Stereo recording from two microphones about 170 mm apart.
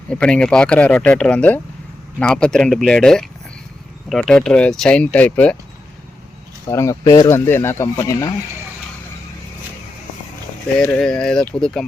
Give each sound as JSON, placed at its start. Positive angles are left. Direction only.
{"t": 0.1, "sound": "speech", "side_deg": 5}
{"t": 6.7, "sound": "speech", "side_deg": 15}
{"t": 10.9, "sound": "speech", "side_deg": 5}